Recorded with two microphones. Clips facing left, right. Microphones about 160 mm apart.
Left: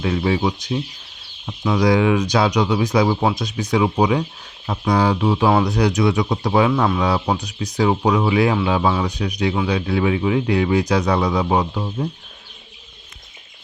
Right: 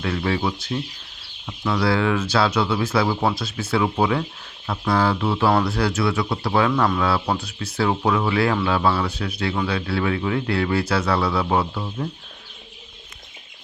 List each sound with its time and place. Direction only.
0.0 s speech: 15° left (ahead or behind)